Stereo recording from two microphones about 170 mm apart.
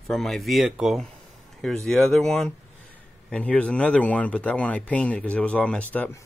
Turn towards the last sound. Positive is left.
turn(degrees=10)  # may be behind; listen again after turning